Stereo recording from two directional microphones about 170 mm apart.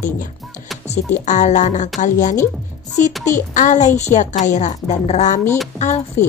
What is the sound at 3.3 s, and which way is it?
A woman's voice, 50° left (ahead or behind).